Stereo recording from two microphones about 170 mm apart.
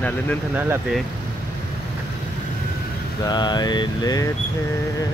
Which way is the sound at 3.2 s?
25° left (ahead or behind).